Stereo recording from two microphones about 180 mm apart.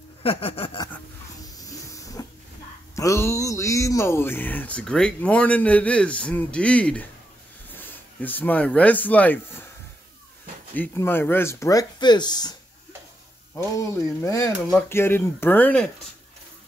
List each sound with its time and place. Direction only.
0.2 s a sound: 30° left (ahead or behind)
1.7 s hiss: 20° left (ahead or behind)
3.0 s speech: 15° left (ahead or behind)
10.7 s speech: 10° left (ahead or behind)
13.6 s speech: 15° left (ahead or behind)